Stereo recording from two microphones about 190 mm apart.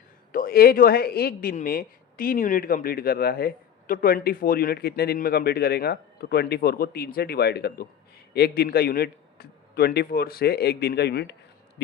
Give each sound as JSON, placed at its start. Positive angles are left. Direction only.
{"t": 0.3, "sound": "a man's voice", "side_deg": 50}